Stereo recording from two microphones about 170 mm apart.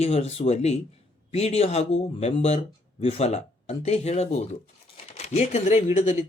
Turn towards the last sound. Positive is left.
turn(degrees=45)  # may be behind; listen again after turning